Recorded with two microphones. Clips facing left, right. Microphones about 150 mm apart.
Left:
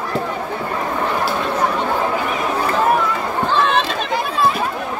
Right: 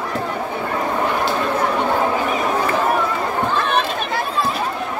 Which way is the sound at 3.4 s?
90° left.